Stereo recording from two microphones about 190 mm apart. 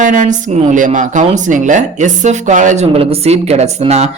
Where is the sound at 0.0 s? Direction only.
40° right (ahead or behind).